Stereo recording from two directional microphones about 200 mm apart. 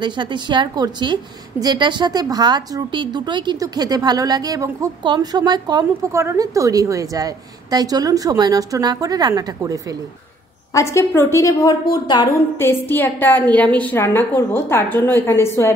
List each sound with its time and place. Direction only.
0.0 s a woman's voice: 25° right (ahead or behind)
10.7 s a woman's voice: 15° left (ahead or behind)